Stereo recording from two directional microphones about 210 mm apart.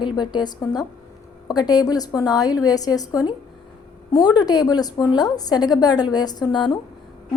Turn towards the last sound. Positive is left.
turn(degrees=20)  # may be behind; listen again after turning